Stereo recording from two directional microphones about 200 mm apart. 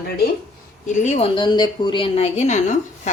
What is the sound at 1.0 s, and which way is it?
A woman's voice, 30° left (ahead or behind).